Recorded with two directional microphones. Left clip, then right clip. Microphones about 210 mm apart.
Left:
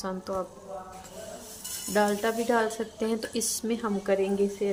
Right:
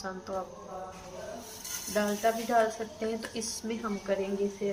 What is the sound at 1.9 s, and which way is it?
Speech, 55° left (ahead or behind).